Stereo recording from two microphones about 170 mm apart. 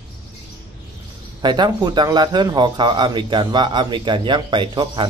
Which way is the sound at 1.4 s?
25° right (ahead or behind).